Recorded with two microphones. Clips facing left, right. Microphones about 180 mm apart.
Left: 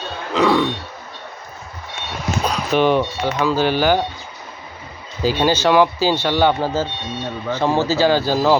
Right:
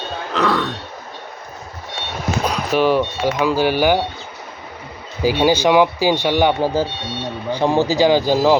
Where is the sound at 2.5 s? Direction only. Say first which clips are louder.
Even; 5° right (ahead or behind).